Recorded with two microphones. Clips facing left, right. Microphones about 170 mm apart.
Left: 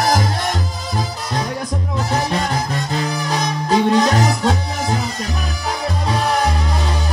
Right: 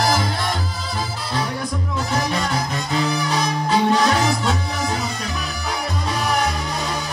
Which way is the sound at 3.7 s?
35° left (ahead or behind).